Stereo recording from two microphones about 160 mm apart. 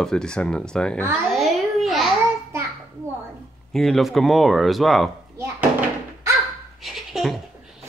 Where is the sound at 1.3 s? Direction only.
Centre (ahead or behind).